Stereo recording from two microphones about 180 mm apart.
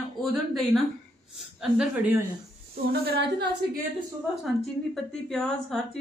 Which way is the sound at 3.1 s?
60° right (ahead or behind).